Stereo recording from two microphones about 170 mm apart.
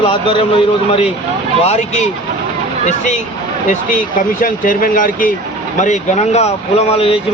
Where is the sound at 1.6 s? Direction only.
40° left (ahead or behind).